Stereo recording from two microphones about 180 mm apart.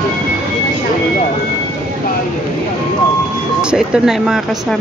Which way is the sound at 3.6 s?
5° right (ahead or behind).